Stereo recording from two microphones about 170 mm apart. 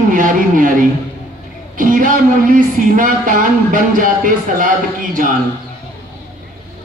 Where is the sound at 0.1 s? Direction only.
50° right (ahead or behind).